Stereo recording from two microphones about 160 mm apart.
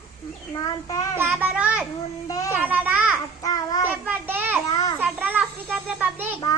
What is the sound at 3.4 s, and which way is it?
Child singing, 25° left (ahead or behind).